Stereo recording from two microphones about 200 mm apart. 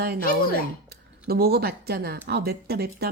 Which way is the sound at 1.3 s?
50° right (ahead or behind).